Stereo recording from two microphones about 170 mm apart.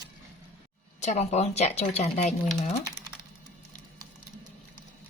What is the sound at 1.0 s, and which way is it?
Speech, 40° left (ahead or behind).